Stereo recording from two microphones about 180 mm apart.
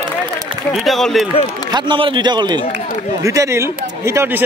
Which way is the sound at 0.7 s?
Centre (ahead or behind).